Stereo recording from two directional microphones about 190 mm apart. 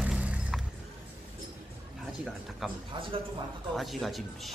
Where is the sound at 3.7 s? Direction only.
Centre (ahead or behind).